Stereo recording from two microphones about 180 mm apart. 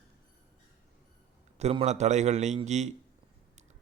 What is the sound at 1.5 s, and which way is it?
A man's voice, 35° right (ahead or behind).